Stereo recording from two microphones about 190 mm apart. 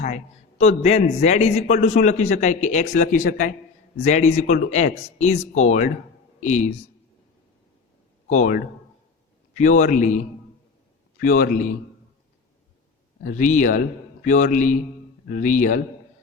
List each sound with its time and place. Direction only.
0.8 s speech: 35° left (ahead or behind)
8.3 s speech: 40° left (ahead or behind)
11.2 s speech: 45° left (ahead or behind)
13.2 s speech: 40° left (ahead or behind)